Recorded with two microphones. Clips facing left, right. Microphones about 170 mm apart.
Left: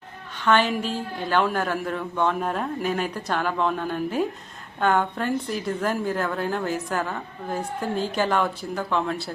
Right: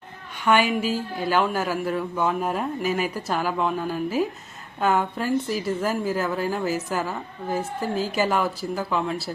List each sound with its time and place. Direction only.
0.4 s a woman's voice: 10° right (ahead or behind)